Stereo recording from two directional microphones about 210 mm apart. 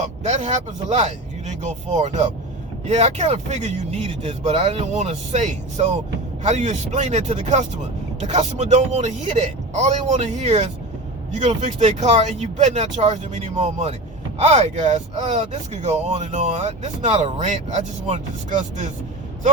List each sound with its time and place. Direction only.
0.0 s speech: 30° right (ahead or behind)